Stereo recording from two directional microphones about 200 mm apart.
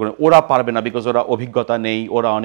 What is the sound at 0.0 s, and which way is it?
Speech, 15° right (ahead or behind).